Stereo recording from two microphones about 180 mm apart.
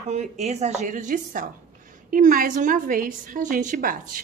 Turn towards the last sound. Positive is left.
turn(degrees=-50)  # may be behind; listen again after turning